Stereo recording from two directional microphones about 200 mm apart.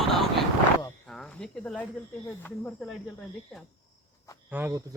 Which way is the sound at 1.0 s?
5° left (ahead or behind).